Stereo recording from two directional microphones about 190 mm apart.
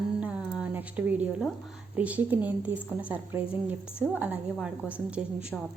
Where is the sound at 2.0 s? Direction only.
10° right (ahead or behind).